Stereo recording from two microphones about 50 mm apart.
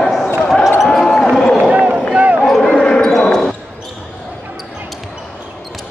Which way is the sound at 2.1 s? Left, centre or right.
Right.